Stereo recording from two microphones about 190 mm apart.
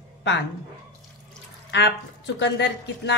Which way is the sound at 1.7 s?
70° left (ahead or behind).